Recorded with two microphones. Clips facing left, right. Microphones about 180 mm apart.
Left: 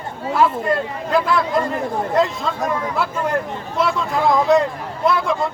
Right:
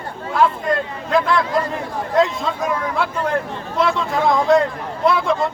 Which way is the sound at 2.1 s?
Centre (ahead or behind).